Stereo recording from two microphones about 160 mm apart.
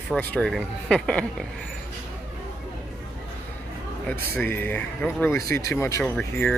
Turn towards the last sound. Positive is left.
turn(degrees=10)  # may be behind; listen again after turning